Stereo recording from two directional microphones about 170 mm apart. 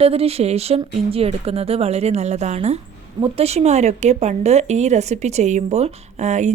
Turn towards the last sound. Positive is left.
turn(degrees=-45)  # may be behind; listen again after turning